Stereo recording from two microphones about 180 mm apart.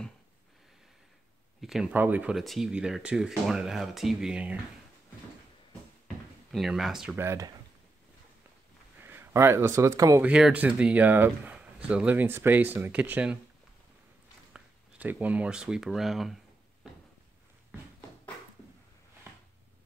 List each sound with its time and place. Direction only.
1.6 s speech: centre (ahead or behind)
6.5 s speech: centre (ahead or behind)
7.2 s speech: 15° right (ahead or behind)
9.0 s speech: 15° right (ahead or behind)
10.2 s speech: 5° right (ahead or behind)
14.5 s speech: 10° right (ahead or behind)